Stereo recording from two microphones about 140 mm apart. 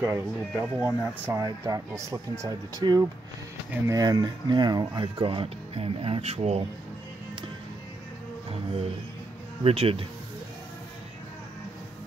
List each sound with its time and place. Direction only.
0.0 s speech: 20° right (ahead or behind)
1.4 s speech: 25° right (ahead or behind); by 6.6 s 45° right (ahead or behind)
9.6 s speech: 45° right (ahead or behind)